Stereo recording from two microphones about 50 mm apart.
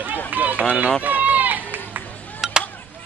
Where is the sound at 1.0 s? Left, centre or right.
Right.